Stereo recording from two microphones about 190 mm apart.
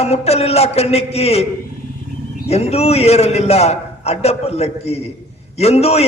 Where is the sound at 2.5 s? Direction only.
35° left (ahead or behind).